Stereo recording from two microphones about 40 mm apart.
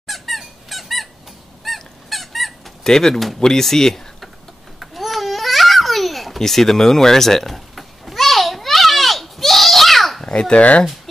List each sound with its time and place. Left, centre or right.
0.0 s squeak: centre
1.6 s a sound: centre
2.8 s speech: centre
4.7 s babbling: centre
10.5 s speech: left